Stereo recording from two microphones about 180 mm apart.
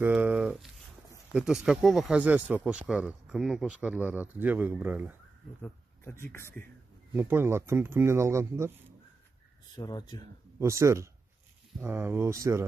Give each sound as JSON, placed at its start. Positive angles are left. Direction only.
{"t": 0.0, "sound": "speech", "side_deg": -5}
{"t": 5.6, "sound": "speech", "side_deg": 15}
{"t": 7.2, "sound": "speech", "side_deg": -15}
{"t": 9.8, "sound": "speech", "side_deg": 25}
{"t": 10.6, "sound": "speech", "side_deg": -15}